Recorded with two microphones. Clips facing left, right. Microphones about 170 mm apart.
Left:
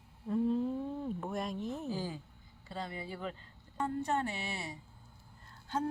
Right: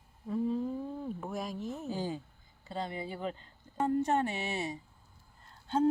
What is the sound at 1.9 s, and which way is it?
Speech, 25° right (ahead or behind).